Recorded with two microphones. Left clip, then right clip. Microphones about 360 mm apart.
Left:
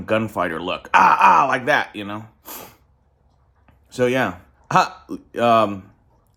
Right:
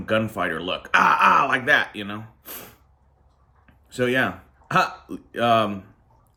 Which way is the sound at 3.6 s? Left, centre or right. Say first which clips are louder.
Left 4 dB; centre.